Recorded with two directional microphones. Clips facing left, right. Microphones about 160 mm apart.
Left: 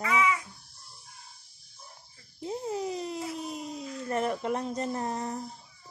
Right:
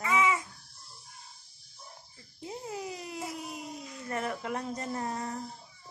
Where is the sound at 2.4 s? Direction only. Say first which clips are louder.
Left 6 dB; 25° left (ahead or behind).